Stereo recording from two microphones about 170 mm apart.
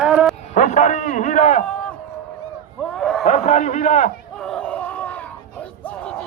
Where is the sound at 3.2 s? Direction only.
45° left (ahead or behind).